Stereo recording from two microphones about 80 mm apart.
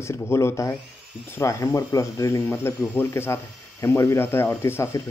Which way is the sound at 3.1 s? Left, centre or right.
Left.